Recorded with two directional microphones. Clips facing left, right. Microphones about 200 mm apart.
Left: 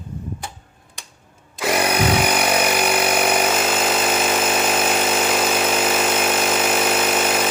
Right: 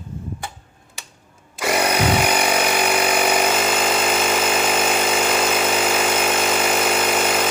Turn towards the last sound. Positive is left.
turn(degrees=5)  # may be behind; listen again after turning